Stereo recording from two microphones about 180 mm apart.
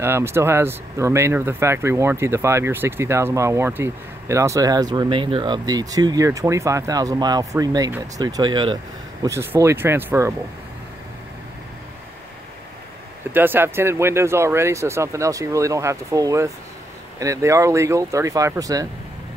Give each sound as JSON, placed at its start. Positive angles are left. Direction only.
{"t": 0.0, "sound": "speech", "side_deg": -15}
{"t": 9.2, "sound": "speech", "side_deg": -15}
{"t": 13.3, "sound": "speech", "side_deg": -10}